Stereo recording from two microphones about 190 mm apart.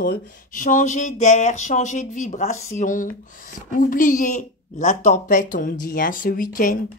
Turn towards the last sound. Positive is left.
turn(degrees=45)  # may be behind; listen again after turning